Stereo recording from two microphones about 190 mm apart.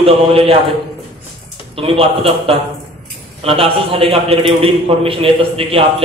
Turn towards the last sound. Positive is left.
turn(degrees=-30)  # may be behind; listen again after turning